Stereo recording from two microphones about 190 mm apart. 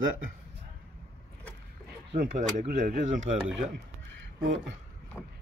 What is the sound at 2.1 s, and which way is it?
Speech, 50° right (ahead or behind).